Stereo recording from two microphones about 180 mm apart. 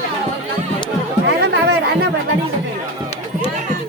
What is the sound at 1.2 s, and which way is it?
Chatter, 75° right (ahead or behind).